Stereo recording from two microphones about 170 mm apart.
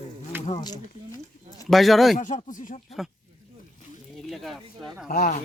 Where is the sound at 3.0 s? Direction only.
Centre (ahead or behind).